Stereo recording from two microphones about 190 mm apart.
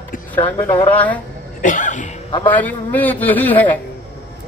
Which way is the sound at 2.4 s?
10° left (ahead or behind).